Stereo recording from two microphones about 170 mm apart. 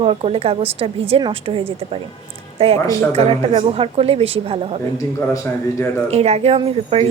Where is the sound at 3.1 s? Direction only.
35° right (ahead or behind).